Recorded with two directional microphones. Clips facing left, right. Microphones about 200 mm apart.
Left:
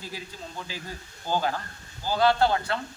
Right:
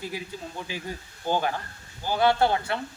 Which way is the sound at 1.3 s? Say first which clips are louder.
Right 1 dB; 15° right (ahead or behind).